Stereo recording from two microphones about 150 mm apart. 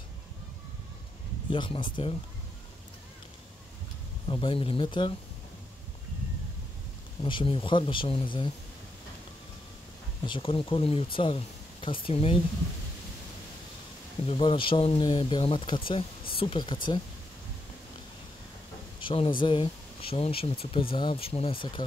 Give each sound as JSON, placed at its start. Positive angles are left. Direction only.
{"t": 1.5, "sound": "speech", "side_deg": 35}
{"t": 4.3, "sound": "speech", "side_deg": 35}
{"t": 7.2, "sound": "speech", "side_deg": 35}
{"t": 10.2, "sound": "speech", "side_deg": 35}
{"t": 14.2, "sound": "speech", "side_deg": 35}
{"t": 18.9, "sound": "speech", "side_deg": 35}